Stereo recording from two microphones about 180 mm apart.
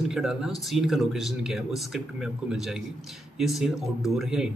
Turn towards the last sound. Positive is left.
turn(degrees=0)  # may be behind; listen again after turning